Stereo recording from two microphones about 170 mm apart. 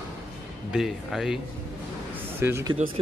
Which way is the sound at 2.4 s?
15° right (ahead or behind).